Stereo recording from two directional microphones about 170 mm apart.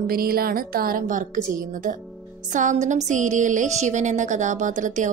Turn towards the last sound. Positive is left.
turn(degrees=-45)  # may be behind; listen again after turning